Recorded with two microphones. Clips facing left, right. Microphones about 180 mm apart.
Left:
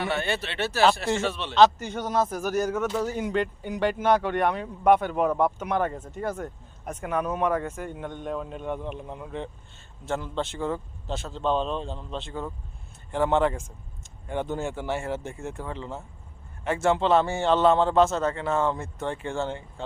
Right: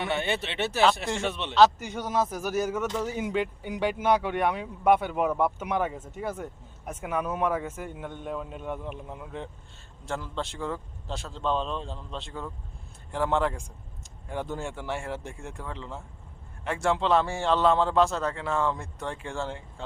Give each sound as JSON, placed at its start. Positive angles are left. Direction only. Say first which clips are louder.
{"t": 0.0, "sound": "speech", "louder": "left 1 dB", "side_deg": -20}
{"t": 1.5, "sound": "speech", "louder": "left 1 dB", "side_deg": -5}
{"t": 2.8, "sound": "speech", "louder": "left 3 dB", "side_deg": 10}
{"t": 3.1, "sound": "speech", "louder": "left 2 dB", "side_deg": -10}